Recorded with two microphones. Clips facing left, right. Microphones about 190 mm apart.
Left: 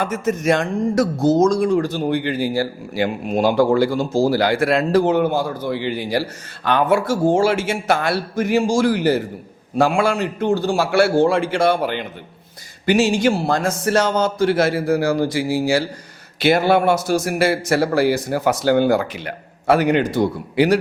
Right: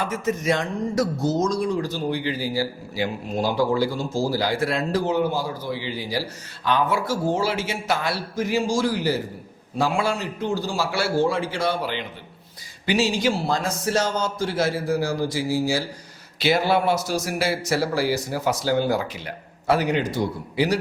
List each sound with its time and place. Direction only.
0.0 s speech: 50° left (ahead or behind)